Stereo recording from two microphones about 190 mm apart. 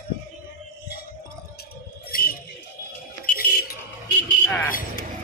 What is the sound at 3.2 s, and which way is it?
Music, 50° left (ahead or behind).